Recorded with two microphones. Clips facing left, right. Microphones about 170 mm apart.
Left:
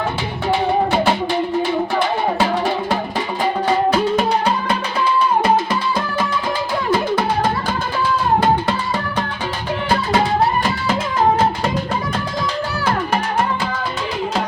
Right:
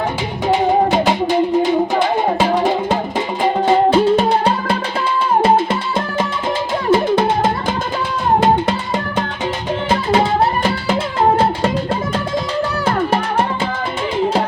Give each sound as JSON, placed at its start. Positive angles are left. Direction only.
{"t": 0.7, "sound": "music", "side_deg": -20}
{"t": 3.4, "sound": "music", "side_deg": -25}
{"t": 6.9, "sound": "music", "side_deg": -20}